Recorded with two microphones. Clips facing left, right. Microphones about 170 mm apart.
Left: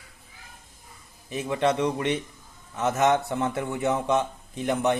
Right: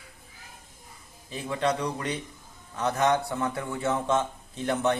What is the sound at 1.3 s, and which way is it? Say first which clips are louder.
A man's voice: left 3 dB; 20° left (ahead or behind).